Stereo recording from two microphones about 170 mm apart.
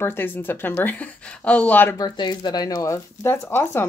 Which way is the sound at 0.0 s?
10° left (ahead or behind).